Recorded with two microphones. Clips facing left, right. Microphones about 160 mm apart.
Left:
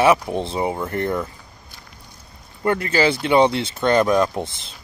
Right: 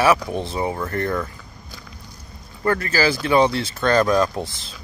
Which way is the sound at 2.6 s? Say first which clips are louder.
Left 1 dB; 25° left (ahead or behind).